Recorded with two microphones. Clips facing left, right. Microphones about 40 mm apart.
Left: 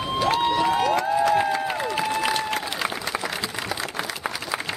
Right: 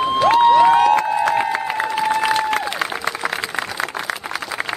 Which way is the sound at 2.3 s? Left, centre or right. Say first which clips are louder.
Right 7 dB; right.